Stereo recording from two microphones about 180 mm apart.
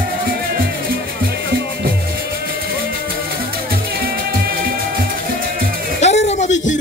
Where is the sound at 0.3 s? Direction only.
55° right (ahead or behind).